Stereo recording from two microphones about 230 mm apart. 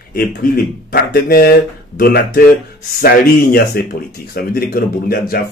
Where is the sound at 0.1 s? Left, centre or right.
Left.